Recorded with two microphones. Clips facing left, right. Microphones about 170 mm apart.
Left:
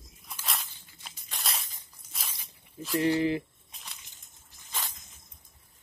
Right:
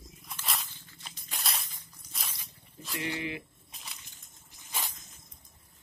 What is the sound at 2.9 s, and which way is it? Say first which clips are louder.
Speech: left 10 dB; 35° left (ahead or behind).